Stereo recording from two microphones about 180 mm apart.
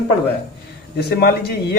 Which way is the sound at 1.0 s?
65° left (ahead or behind).